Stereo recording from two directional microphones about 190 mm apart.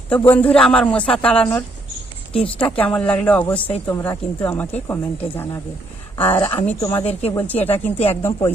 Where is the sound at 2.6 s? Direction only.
5° left (ahead or behind).